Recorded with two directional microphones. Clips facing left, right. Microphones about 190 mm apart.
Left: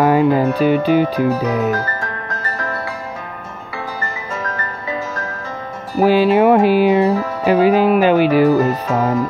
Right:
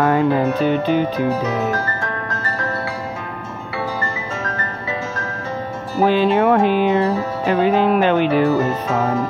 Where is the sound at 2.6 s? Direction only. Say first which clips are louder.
Right 1 dB; 30° right (ahead or behind).